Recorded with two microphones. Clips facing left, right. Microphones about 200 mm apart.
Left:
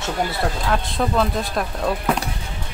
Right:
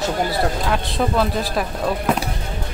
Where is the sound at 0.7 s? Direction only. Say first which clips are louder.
Right 1 dB; centre (ahead or behind).